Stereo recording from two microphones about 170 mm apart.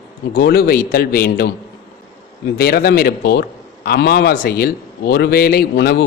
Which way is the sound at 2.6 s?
65° left (ahead or behind).